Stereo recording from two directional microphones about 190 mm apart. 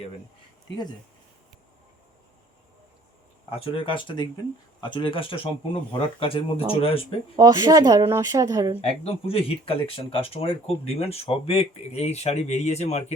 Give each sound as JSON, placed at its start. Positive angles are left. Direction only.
{"t": 3.5, "sound": "speech", "side_deg": 25}
{"t": 7.3, "sound": "speech", "side_deg": -20}
{"t": 9.0, "sound": "speech", "side_deg": 30}